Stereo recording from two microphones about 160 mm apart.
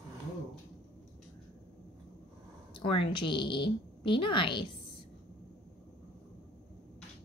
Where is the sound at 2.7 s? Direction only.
35° left (ahead or behind).